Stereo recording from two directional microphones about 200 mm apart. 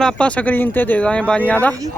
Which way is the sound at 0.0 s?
5° left (ahead or behind).